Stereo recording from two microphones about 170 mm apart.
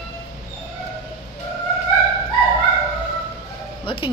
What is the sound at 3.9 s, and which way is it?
Speech, 30° left (ahead or behind).